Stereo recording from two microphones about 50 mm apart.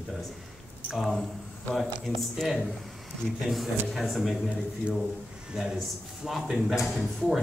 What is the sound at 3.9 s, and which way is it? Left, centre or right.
Speech, centre.